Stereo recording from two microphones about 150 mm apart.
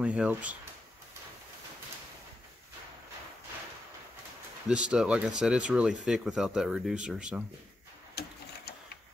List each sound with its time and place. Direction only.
0.0 s speech: 10° right (ahead or behind)
4.6 s speech: 5° right (ahead or behind)
8.2 s typewriter: 90° left